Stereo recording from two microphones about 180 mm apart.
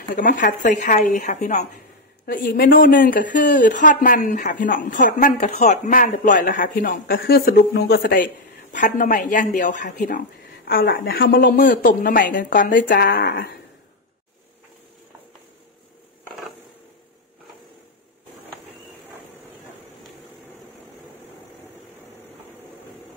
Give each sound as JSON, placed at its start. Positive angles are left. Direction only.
{"t": 0.1, "sound": "speech", "side_deg": 50}
{"t": 2.2, "sound": "speech", "side_deg": 55}
{"t": 13.0, "sound": "speech", "side_deg": 65}